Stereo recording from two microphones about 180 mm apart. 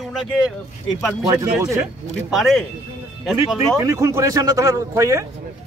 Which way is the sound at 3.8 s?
15° right (ahead or behind).